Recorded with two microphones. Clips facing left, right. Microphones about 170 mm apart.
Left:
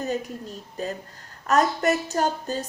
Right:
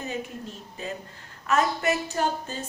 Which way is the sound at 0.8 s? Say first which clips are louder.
Left 5 dB; 40° left (ahead or behind).